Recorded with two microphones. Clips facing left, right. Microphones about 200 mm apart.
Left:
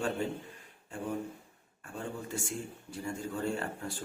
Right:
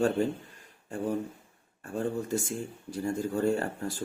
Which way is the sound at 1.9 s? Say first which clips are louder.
Right 9 dB; 40° right (ahead or behind).